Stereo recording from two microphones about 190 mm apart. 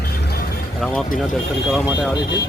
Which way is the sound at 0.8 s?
Centre (ahead or behind).